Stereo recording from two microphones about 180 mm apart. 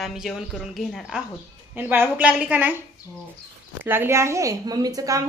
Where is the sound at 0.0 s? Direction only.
Centre (ahead or behind).